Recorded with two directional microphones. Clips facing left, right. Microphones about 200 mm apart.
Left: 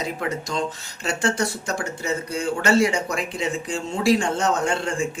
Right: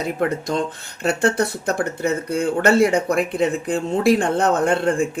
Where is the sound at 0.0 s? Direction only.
55° right (ahead or behind).